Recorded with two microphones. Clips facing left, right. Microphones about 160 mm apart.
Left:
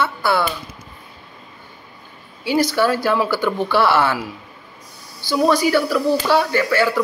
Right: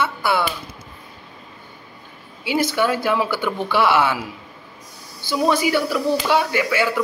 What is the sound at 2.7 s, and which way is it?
Speech, 15° right (ahead or behind).